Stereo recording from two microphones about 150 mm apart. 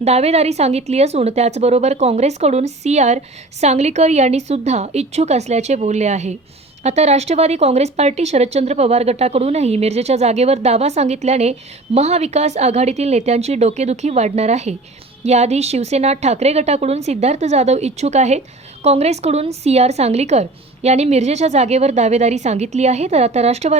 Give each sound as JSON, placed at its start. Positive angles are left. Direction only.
{"t": 0.0, "sound": "a woman's voice", "side_deg": -45}